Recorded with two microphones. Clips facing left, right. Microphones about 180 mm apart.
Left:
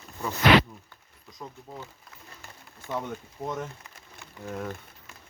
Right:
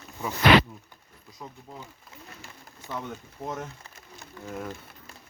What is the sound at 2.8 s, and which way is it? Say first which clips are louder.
Speech: left 4 dB; 20° right (ahead or behind).